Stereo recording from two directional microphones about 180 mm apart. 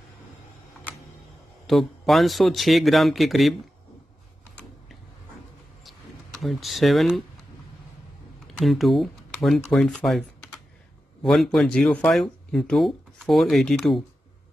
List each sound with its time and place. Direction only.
1.7 s speech: centre (ahead or behind)
6.4 s speech: centre (ahead or behind)
8.5 s speech: centre (ahead or behind)